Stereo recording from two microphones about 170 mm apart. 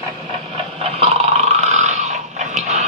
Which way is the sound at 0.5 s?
35° right (ahead or behind).